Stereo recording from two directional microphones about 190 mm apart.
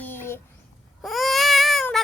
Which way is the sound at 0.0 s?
10° left (ahead or behind).